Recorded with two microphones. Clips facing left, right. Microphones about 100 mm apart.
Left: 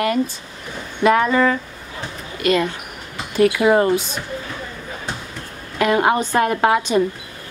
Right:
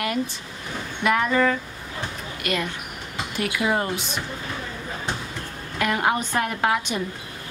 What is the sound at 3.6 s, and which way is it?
Speech, 55° left (ahead or behind).